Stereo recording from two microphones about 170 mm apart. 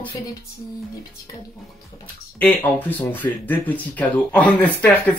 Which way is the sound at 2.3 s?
10° left (ahead or behind).